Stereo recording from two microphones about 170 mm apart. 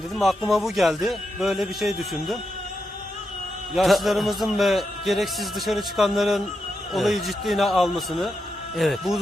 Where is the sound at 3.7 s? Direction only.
Centre (ahead or behind).